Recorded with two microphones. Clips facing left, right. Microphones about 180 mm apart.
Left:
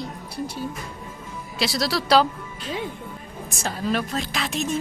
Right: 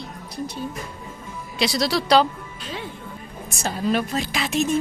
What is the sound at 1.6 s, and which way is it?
Speech, centre (ahead or behind).